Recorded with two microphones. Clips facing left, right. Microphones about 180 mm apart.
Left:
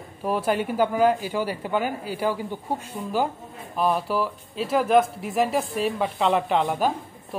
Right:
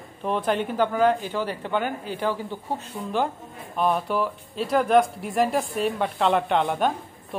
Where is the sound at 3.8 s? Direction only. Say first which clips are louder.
Even; centre (ahead or behind).